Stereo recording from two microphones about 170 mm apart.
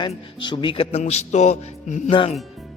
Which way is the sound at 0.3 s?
30° left (ahead or behind).